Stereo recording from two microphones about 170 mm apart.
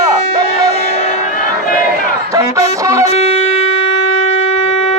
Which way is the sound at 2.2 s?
20° right (ahead or behind).